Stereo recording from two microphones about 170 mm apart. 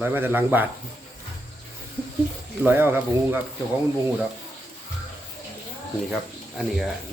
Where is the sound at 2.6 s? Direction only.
10° right (ahead or behind).